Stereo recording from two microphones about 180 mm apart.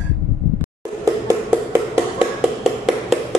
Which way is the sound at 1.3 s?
10° right (ahead or behind).